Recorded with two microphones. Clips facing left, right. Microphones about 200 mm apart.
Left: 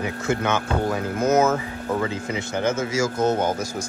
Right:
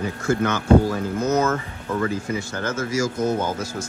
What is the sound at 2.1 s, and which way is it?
Speech, 20° left (ahead or behind).